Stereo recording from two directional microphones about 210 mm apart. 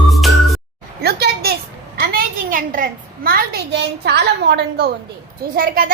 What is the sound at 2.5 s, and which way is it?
A woman's voice, 40° right (ahead or behind).